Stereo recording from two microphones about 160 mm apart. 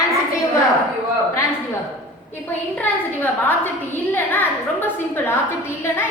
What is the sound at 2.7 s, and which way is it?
A woman's voice, 10° left (ahead or behind).